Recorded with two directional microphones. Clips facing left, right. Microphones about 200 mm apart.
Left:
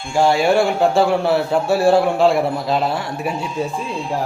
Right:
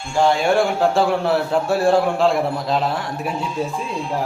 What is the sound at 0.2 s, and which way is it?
A man's voice, 5° left (ahead or behind).